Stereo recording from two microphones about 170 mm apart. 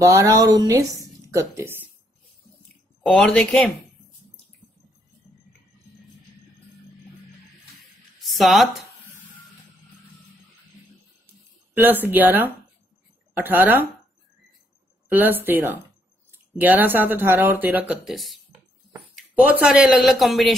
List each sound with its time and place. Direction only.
0.0 s a woman's voice: 15° right (ahead or behind)
3.1 s speech: 5° left (ahead or behind)
8.2 s speech: centre (ahead or behind)
11.7 s speech: 10° right (ahead or behind)
15.0 s speech: 10° right (ahead or behind)